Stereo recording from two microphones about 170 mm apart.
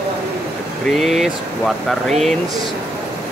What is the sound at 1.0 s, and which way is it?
Speech, centre (ahead or behind).